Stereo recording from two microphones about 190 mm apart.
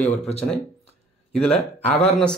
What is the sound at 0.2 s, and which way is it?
Speech, 35° left (ahead or behind).